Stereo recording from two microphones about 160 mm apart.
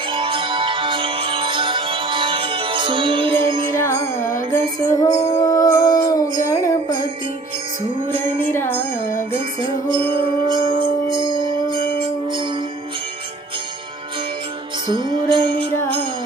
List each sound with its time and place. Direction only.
0.1 s music: 30° right (ahead or behind)
3.8 s music: 20° left (ahead or behind)
4.5 s female singing: 20° left (ahead or behind)
8.5 s music: 15° left (ahead or behind)
9.3 s music: 35° right (ahead or behind)
14.8 s music: 30° right (ahead or behind)